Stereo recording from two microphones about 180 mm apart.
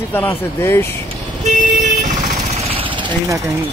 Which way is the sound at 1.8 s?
45° right (ahead or behind).